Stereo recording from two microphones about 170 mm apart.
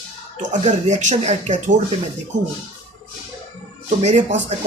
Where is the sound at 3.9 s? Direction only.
40° right (ahead or behind).